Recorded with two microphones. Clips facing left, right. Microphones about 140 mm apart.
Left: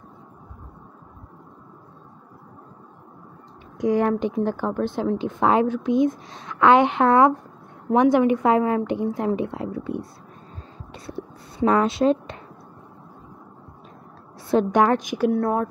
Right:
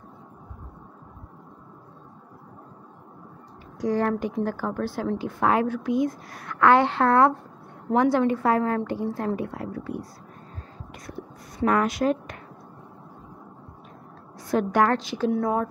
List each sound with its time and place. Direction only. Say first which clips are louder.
3.8 s a woman's voice: left 4 dB; 15° left (ahead or behind)
10.9 s a sound: left 5 dB; 30° left (ahead or behind)
14.5 s a woman's voice: left 3 dB; 20° left (ahead or behind)
15.3 s speech: left 2 dB; centre (ahead or behind)